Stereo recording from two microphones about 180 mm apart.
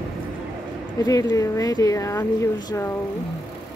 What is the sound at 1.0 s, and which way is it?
Speech, 20° left (ahead or behind).